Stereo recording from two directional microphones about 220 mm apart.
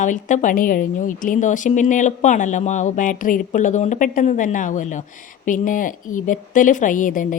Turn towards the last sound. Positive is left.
turn(degrees=35)  # may be behind; listen again after turning